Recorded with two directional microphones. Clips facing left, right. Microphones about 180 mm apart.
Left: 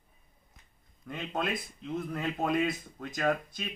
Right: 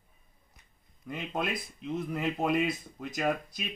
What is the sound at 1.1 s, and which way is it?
Speech, 10° right (ahead or behind).